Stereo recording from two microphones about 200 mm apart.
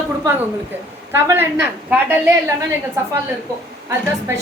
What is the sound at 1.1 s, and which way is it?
A woman's voice, 10° right (ahead or behind).